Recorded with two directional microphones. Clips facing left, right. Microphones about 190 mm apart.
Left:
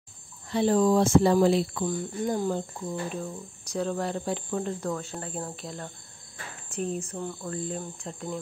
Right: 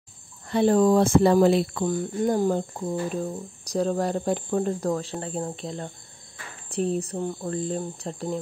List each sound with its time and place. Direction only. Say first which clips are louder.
0.5 s speech: right 3 dB; 55° right (ahead or behind); by 5.1 s 40° right (ahead or behind)
5.2 s speech: right 5 dB; 25° right (ahead or behind)
6.7 s speech: right 6 dB; 35° right (ahead or behind)